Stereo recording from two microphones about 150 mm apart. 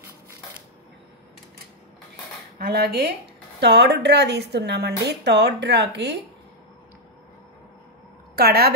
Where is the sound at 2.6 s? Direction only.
90° right.